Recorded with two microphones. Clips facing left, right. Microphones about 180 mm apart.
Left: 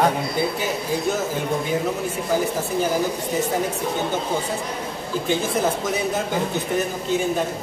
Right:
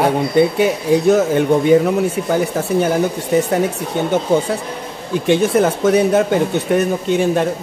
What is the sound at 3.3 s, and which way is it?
Speech, 70° right (ahead or behind).